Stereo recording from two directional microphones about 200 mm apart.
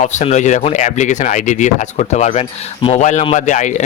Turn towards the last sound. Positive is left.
turn(degrees=35)  # may be behind; listen again after turning